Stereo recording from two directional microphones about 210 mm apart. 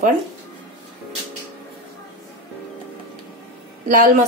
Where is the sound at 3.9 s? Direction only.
35° right (ahead or behind).